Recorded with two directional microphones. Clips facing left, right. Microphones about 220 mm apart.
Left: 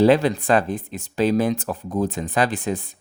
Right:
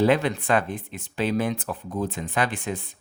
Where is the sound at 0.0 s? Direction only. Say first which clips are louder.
Left 5 dB; 35° left (ahead or behind).